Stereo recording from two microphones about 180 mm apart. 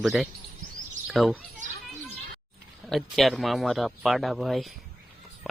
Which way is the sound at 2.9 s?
Centre (ahead or behind).